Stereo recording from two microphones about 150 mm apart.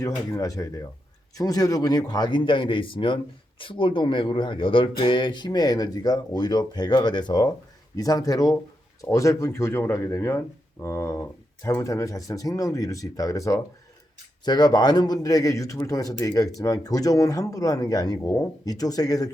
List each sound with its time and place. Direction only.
0.0 s a man's voice: 20° left (ahead or behind)